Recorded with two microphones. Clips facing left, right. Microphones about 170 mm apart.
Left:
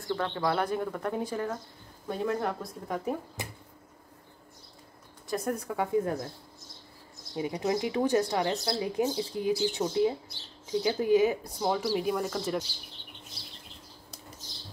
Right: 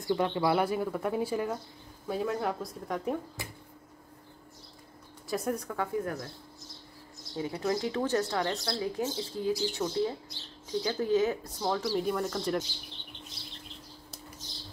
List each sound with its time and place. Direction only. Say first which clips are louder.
0.0 s speech: right 2 dB; 15° right (ahead or behind); by 3.2 s centre (ahead or behind)
3.4 s speech: left 2 dB; 20° left (ahead or behind)
5.3 s speech: left 1 dB; centre (ahead or behind)
5.8 s speech: left 4 dB; 25° left (ahead or behind)
7.3 s speech: left 2 dB; 15° left (ahead or behind)